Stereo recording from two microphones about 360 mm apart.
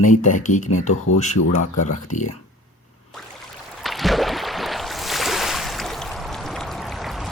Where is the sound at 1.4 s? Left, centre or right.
Left.